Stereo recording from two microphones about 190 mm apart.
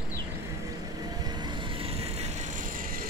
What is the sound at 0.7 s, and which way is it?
Vehicle, 20° right (ahead or behind).